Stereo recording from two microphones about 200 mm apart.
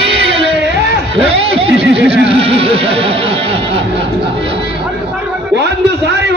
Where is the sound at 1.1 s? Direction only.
30° right (ahead or behind).